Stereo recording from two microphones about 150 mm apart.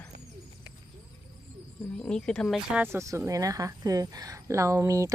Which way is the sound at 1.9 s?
5° left (ahead or behind).